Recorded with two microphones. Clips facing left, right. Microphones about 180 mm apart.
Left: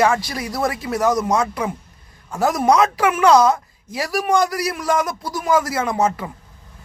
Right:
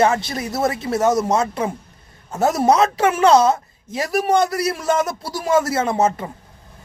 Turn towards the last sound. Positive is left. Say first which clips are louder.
# right 1 dB
turn(degrees=-25)  # may be behind; listen again after turning